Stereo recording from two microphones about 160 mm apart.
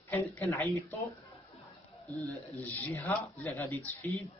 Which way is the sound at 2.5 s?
10° left (ahead or behind).